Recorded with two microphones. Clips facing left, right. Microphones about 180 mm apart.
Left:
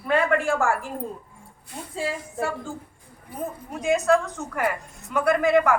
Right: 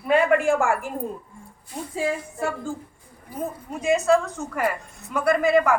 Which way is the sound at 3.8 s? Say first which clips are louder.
Right 1 dB; centre (ahead or behind).